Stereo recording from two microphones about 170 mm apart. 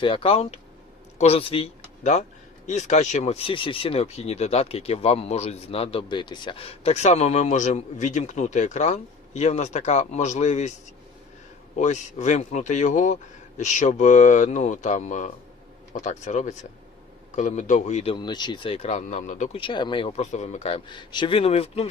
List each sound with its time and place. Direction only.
0.0 s speech: 30° left (ahead or behind)
11.8 s speech: 45° left (ahead or behind)
18.1 s speech: 25° left (ahead or behind); by 19.5 s 45° left (ahead or behind)
19.5 s speech: 30° left (ahead or behind)